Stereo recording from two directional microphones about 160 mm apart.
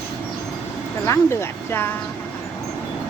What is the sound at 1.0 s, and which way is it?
Speech, 15° left (ahead or behind).